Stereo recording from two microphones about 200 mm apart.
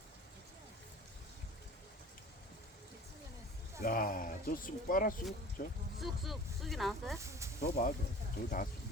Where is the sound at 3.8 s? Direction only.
45° left (ahead or behind).